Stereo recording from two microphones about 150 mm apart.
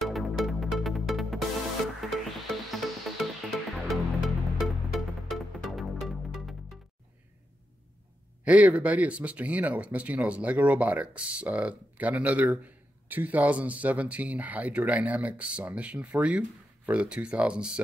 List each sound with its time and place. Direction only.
0.0 s music: centre (ahead or behind)
8.5 s speech: 10° right (ahead or behind)